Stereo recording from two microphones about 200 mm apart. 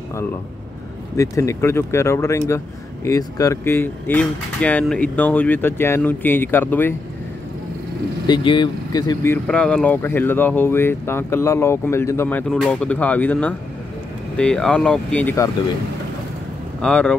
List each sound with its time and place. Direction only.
1.1 s speech: 15° left (ahead or behind)
8.3 s speech: 25° left (ahead or behind)
16.8 s speech: 5° left (ahead or behind)